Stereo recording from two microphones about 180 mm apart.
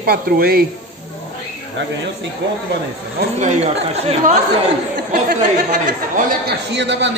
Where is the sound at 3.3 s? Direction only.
40° right (ahead or behind).